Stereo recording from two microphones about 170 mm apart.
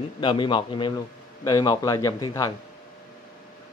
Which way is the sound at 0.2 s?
30° left (ahead or behind).